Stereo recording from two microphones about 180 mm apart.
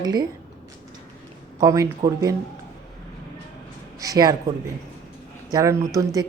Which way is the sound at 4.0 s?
20° right (ahead or behind).